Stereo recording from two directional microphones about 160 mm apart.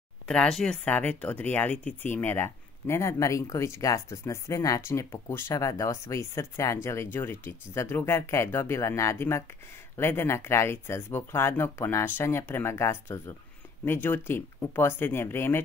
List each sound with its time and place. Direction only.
0.3 s speech: 5° left (ahead or behind)